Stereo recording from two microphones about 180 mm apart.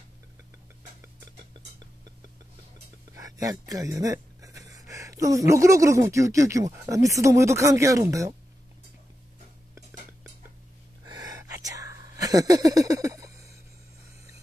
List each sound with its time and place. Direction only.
3.1 s speech: 20° right (ahead or behind)
11.5 s whispering: 20° right (ahead or behind)